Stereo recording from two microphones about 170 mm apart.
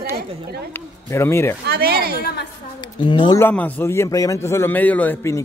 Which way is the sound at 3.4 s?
10° left (ahead or behind).